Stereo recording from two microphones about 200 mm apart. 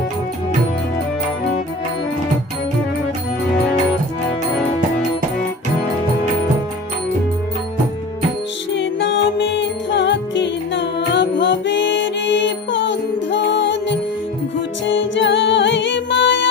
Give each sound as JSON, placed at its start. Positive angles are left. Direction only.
{"t": 8.7, "sound": "music", "side_deg": 65}